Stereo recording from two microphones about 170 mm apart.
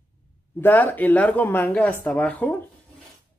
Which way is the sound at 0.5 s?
10° left (ahead or behind).